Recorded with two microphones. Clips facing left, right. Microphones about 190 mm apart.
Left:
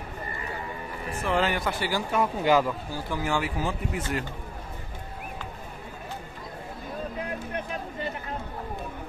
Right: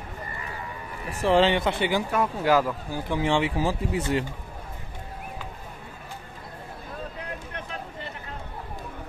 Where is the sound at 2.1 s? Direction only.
Centre (ahead or behind).